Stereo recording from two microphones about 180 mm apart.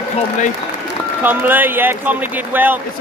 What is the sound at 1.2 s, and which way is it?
Speech, 10° right (ahead or behind).